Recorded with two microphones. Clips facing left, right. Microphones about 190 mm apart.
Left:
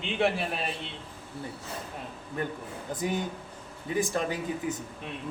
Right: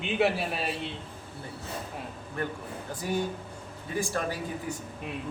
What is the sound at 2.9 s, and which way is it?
A man's voice, 20° left (ahead or behind).